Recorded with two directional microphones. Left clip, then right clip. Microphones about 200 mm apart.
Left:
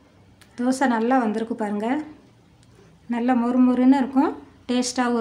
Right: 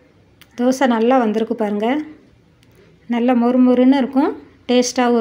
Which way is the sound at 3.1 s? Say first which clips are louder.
Right 6 dB; 15° right (ahead or behind).